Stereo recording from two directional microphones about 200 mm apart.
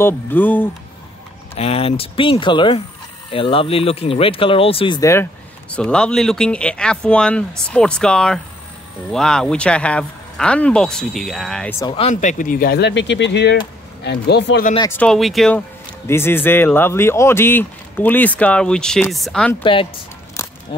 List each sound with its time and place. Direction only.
0.0 s speech: 10° left (ahead or behind)
1.5 s speech: 30° left (ahead or behind); by 11.7 s centre (ahead or behind)
11.8 s speech: 30° left (ahead or behind); by 14.7 s 55° left (ahead or behind)
14.8 s speech: 10° left (ahead or behind)
19.6 s speech: 25° left (ahead or behind)